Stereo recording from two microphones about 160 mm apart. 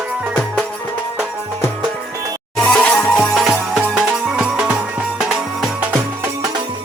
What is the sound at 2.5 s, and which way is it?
Music, 5° left (ahead or behind).